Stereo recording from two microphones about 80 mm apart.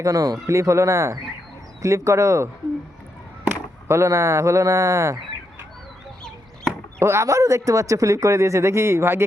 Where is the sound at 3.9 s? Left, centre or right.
Right.